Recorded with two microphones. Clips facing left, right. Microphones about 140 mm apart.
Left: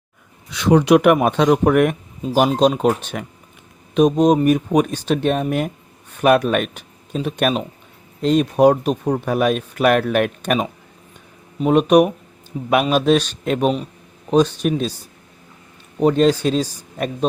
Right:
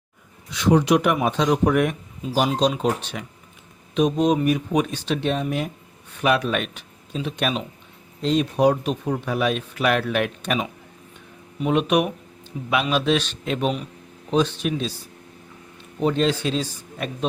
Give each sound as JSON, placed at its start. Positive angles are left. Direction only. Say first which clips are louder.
{"t": 0.5, "sound": "speech", "louder": "left 5 dB", "side_deg": 65}
{"t": 16.0, "sound": "speech", "louder": "left 6 dB", "side_deg": 45}